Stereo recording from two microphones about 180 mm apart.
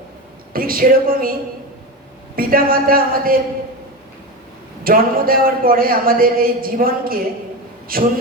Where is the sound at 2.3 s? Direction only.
55° right (ahead or behind).